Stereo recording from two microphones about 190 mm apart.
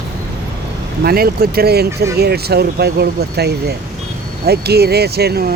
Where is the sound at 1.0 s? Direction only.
55° right (ahead or behind).